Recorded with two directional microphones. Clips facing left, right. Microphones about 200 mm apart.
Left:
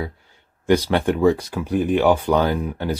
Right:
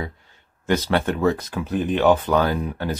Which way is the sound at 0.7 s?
15° left (ahead or behind).